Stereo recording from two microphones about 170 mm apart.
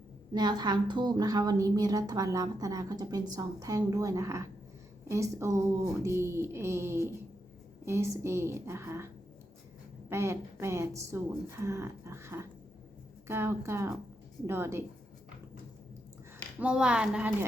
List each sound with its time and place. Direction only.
0.3 s a woman's voice: 25° right (ahead or behind)
10.1 s a woman's voice: 15° right (ahead or behind)
16.6 s a woman's voice: 5° right (ahead or behind)